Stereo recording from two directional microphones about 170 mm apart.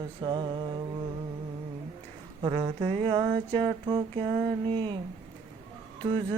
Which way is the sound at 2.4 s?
30° right (ahead or behind).